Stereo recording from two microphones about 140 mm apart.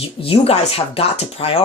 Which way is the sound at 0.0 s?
45° left (ahead or behind).